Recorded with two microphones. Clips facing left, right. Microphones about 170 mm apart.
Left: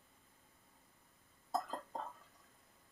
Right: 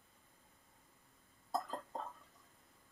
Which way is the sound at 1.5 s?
Centre (ahead or behind).